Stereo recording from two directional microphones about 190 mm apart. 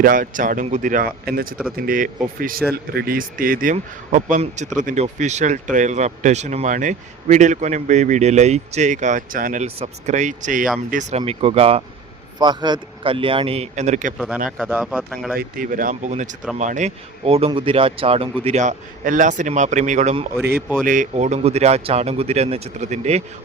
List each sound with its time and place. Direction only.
0.0 s a man's voice: 45° right (ahead or behind)
14.6 s speech: centre (ahead or behind)
15.4 s a man's voice: 45° right (ahead or behind)